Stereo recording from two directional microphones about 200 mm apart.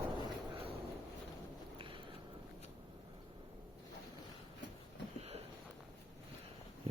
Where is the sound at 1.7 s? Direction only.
25° right (ahead or behind).